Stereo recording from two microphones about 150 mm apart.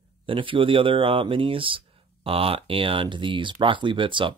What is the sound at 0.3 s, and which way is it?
Speech, 35° right (ahead or behind).